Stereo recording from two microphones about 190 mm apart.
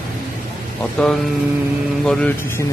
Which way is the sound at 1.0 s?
5° left (ahead or behind).